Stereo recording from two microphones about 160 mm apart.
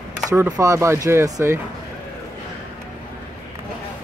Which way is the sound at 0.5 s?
20° right (ahead or behind).